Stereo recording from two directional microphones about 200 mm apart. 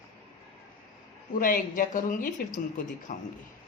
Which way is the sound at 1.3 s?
45° left (ahead or behind).